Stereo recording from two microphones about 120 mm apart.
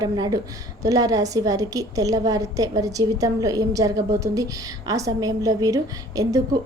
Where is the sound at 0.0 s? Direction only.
30° right (ahead or behind).